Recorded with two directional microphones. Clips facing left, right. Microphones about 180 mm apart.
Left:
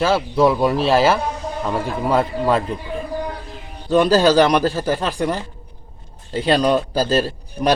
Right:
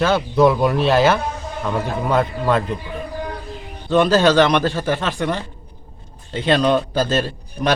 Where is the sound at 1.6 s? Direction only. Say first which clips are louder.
Even; 5° left (ahead or behind).